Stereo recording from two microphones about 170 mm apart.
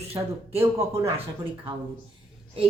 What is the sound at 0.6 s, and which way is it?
Speech, 15° right (ahead or behind).